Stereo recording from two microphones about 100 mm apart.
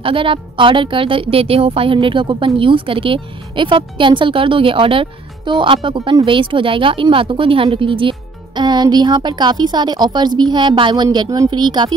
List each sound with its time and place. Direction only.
0.0 s a woman's voice: 60° right (ahead or behind); by 11.9 s 45° right (ahead or behind)